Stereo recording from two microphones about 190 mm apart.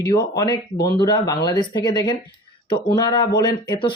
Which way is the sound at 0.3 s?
20° left (ahead or behind).